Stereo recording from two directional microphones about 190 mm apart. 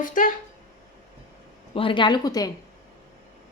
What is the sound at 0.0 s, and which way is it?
Speech, 45° left (ahead or behind).